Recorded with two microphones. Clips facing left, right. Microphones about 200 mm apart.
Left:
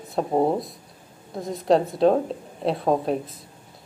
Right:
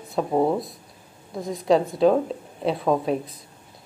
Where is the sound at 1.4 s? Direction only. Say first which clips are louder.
Even; centre (ahead or behind).